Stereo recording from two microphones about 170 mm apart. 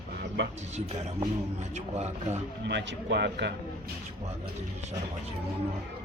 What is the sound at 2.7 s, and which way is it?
Speech, 90° right.